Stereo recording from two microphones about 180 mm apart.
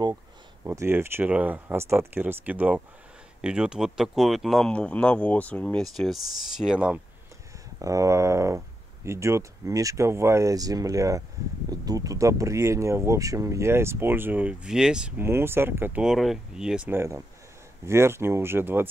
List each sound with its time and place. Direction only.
0.7 s speech: 15° right (ahead or behind)
7.8 s speech: 15° right (ahead or behind)